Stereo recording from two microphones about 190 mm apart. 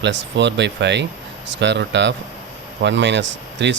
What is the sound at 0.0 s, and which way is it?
Speech, 65° right (ahead or behind).